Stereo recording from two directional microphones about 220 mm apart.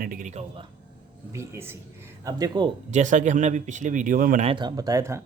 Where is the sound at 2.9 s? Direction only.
35° right (ahead or behind).